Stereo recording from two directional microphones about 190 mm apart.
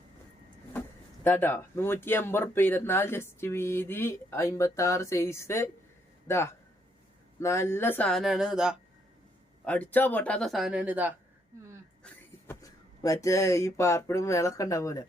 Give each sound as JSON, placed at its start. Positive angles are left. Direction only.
{"t": 1.2, "sound": "speech", "side_deg": 10}
{"t": 9.6, "sound": "speech", "side_deg": 10}
{"t": 12.0, "sound": "speech", "side_deg": 15}